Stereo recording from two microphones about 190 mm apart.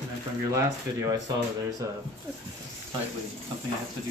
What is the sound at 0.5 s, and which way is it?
Speech, 15° right (ahead or behind).